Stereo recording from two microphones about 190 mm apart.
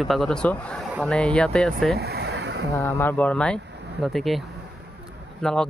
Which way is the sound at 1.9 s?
60° right (ahead or behind).